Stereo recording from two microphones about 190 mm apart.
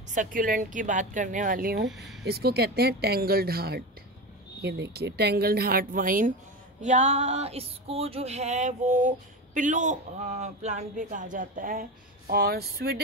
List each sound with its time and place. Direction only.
0.1 s a woman's voice: 45° right (ahead or behind)
6.8 s female singing: 40° right (ahead or behind); by 13.0 s 55° right (ahead or behind)